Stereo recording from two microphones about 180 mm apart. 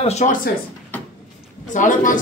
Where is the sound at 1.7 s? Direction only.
45° left (ahead or behind).